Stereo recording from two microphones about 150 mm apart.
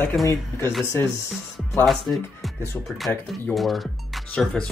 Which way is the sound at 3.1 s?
15° left (ahead or behind).